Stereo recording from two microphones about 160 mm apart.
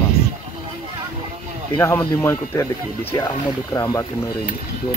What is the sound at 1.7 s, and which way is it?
Speech, 15° left (ahead or behind).